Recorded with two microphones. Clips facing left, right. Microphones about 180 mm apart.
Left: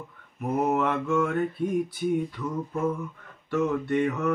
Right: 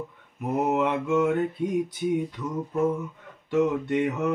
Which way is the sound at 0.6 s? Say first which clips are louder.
Right 1 dB; 20° right (ahead or behind).